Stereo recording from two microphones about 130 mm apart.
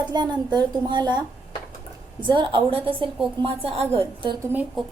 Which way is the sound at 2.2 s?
40° right (ahead or behind).